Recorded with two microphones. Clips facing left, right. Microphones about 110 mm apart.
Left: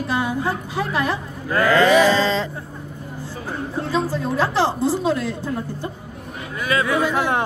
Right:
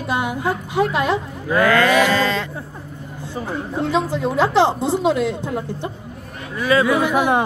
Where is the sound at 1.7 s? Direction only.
30° left (ahead or behind).